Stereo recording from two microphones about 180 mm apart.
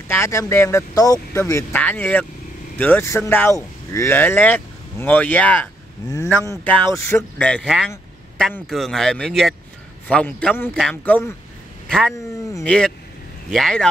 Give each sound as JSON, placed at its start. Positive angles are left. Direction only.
{"t": 0.1, "sound": "speech", "side_deg": 15}
{"t": 6.0, "sound": "speech", "side_deg": 20}